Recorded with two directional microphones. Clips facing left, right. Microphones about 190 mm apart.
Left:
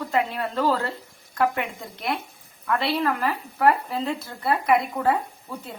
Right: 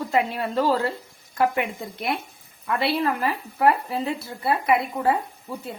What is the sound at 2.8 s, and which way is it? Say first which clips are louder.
Speech: right 1 dB; 10° right (ahead or behind).